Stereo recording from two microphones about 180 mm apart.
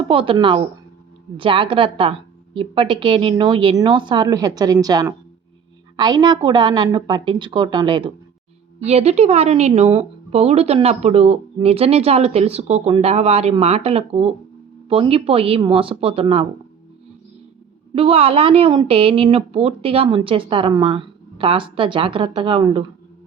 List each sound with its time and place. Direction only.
0.1 s a woman's voice: 30° right (ahead or behind)
8.8 s a woman's voice: 35° right (ahead or behind)
17.9 s a woman's voice: 30° right (ahead or behind)